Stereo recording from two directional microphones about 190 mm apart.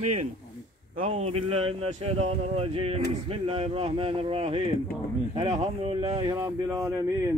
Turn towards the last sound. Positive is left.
turn(degrees=-30)  # may be behind; listen again after turning